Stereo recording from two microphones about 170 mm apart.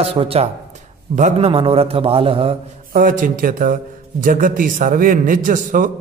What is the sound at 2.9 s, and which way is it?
A man's voice, 55° right (ahead or behind).